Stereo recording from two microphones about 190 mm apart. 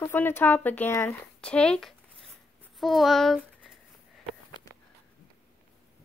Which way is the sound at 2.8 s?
Centre (ahead or behind).